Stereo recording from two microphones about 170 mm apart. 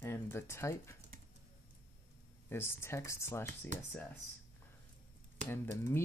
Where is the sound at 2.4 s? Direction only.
15° left (ahead or behind).